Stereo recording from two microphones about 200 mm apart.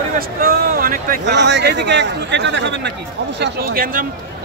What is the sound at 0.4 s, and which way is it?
Speech, 45° right (ahead or behind).